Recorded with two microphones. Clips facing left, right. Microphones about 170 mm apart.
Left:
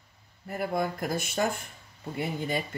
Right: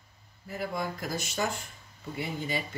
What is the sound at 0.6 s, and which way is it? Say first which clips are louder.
Speech: left 4 dB; 55° left (ahead or behind).